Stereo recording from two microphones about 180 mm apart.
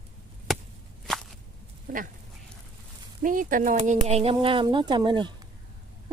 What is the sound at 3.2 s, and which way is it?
Speech, 50° right (ahead or behind).